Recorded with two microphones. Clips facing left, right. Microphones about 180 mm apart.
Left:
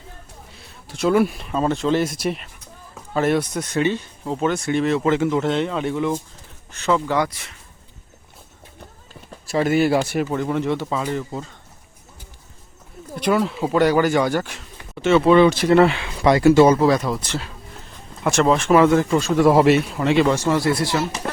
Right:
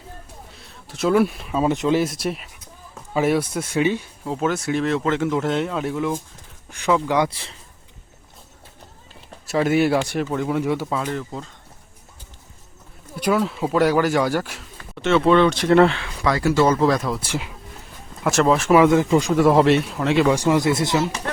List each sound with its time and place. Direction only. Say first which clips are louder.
0.5 s a sound: left 1 dB; centre (ahead or behind)
1.7 s speech: even; 15° right (ahead or behind)
2.0 s speech: even; centre (ahead or behind)
6.7 s speech: even; 15° right (ahead or behind)
7.3 s speech: right 3 dB; 30° right (ahead or behind)
9.5 s speech: even; centre (ahead or behind)
13.3 s speech: left 1 dB; centre (ahead or behind)
16.2 s speech: left 5 dB; 20° left (ahead or behind); by 19.3 s 15° right (ahead or behind)
19.3 s speech: left 2 dB; centre (ahead or behind)
20.3 s speech: right 1 dB; 15° right (ahead or behind)